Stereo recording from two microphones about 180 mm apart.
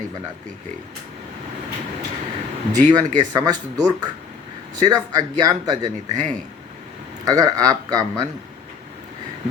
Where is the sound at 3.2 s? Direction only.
20° right (ahead or behind).